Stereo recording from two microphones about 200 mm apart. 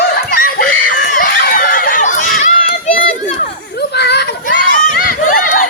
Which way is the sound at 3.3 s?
50° left (ahead or behind).